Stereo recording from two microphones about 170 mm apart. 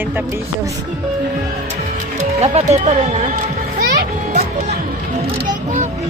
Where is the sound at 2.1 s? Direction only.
45° right (ahead or behind).